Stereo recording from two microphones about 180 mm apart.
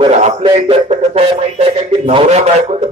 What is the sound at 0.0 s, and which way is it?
Speech, 35° right (ahead or behind).